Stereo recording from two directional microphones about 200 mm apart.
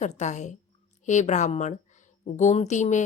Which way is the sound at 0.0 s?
35° left (ahead or behind).